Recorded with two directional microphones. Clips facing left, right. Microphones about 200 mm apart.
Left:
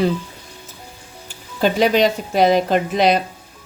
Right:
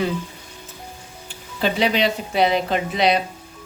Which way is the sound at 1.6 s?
45° left (ahead or behind).